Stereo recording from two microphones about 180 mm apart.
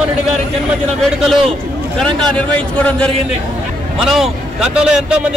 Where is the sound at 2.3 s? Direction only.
5° left (ahead or behind).